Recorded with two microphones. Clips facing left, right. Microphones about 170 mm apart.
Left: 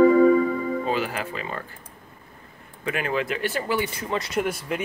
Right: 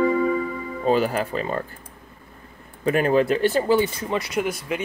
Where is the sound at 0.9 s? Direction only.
40° right (ahead or behind).